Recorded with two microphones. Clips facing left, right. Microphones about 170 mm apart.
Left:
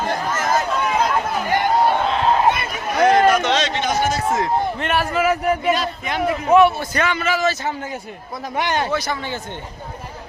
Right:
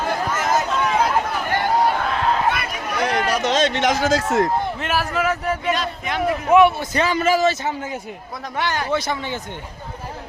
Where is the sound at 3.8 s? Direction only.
90° right.